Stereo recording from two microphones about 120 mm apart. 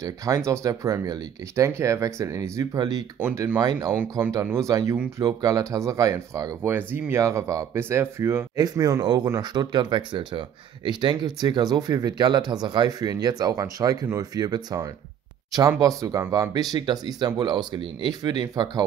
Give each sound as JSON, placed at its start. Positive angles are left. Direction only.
{"t": 0.0, "sound": "speech", "side_deg": -30}
{"t": 3.2, "sound": "speech", "side_deg": -15}
{"t": 3.5, "sound": "speech", "side_deg": -35}